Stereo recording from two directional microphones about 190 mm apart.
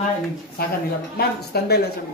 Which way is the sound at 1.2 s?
60° left (ahead or behind).